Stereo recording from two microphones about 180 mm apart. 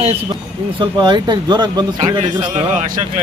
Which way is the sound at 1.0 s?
25° right (ahead or behind).